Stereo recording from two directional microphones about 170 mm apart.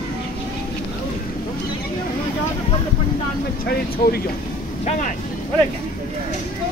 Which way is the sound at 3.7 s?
65° left (ahead or behind).